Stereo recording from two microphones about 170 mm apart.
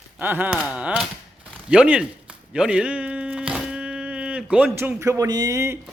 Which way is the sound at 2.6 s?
5° right (ahead or behind).